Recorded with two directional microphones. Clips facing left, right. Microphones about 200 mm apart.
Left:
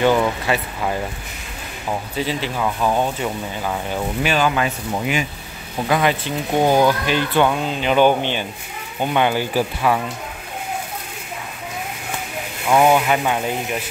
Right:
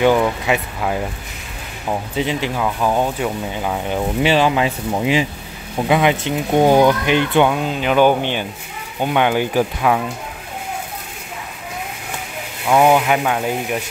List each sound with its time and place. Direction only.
0.0 s speech: 10° right (ahead or behind)
7.5 s speech: 5° right (ahead or behind)
9.5 s speech: 5° left (ahead or behind)
12.6 s speech: 5° right (ahead or behind)